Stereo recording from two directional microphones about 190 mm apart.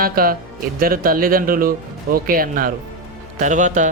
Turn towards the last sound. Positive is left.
turn(degrees=-40)  # may be behind; listen again after turning